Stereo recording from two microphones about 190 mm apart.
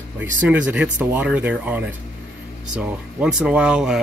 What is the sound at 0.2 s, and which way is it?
Speech, 10° right (ahead or behind).